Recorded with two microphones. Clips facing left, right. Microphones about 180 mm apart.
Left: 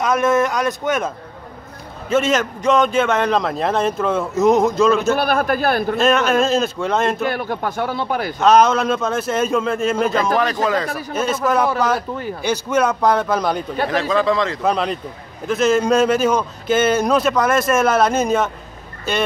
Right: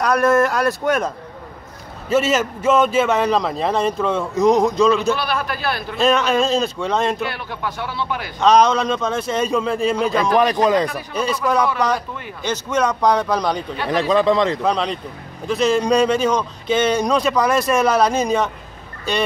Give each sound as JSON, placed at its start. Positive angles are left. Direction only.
{"t": 0.0, "sound": "a man's voice", "side_deg": 0}
{"t": 5.1, "sound": "speech", "side_deg": 50}
{"t": 5.9, "sound": "a man's voice", "side_deg": 0}
{"t": 7.2, "sound": "speech", "side_deg": 45}
{"t": 8.4, "sound": "a man's voice", "side_deg": 5}
{"t": 10.3, "sound": "a man's voice", "side_deg": -15}
{"t": 11.4, "sound": "a man's voice", "side_deg": 5}
{"t": 12.1, "sound": "speech", "side_deg": 35}
{"t": 12.4, "sound": "a man's voice", "side_deg": 10}
{"t": 13.9, "sound": "a man's voice", "side_deg": -15}
{"t": 14.6, "sound": "a man's voice", "side_deg": 5}